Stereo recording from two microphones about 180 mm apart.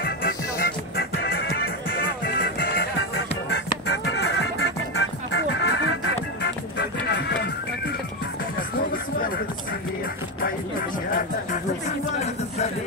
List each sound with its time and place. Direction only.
0.0 s music: 55° left (ahead or behind); by 7.5 s 70° left (ahead or behind)
8.5 s music: 55° left (ahead or behind)
11.1 s music: 50° left (ahead or behind)